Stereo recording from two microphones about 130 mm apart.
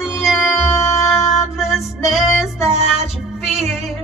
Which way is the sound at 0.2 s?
Centre (ahead or behind).